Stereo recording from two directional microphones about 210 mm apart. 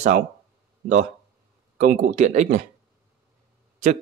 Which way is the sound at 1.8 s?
40° right (ahead or behind).